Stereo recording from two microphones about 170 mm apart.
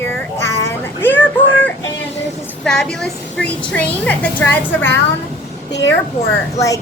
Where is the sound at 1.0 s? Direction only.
10° left (ahead or behind).